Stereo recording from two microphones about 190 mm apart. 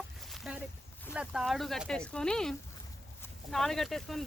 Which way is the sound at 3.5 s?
Centre (ahead or behind).